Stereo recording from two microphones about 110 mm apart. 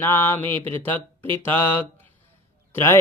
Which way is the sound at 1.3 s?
20° left (ahead or behind).